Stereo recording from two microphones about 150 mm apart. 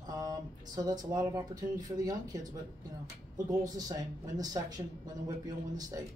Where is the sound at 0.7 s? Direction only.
25° right (ahead or behind).